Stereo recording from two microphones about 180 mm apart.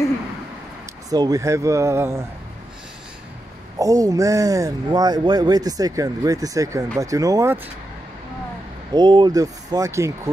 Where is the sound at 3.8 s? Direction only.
20° right (ahead or behind).